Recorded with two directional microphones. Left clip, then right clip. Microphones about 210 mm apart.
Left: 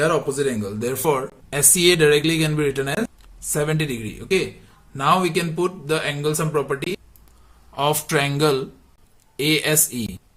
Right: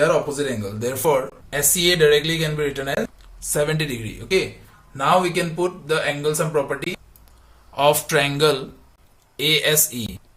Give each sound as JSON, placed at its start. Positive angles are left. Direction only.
{"t": 0.0, "sound": "speech", "side_deg": 20}
{"t": 1.5, "sound": "speech", "side_deg": 40}
{"t": 3.4, "sound": "speech", "side_deg": 25}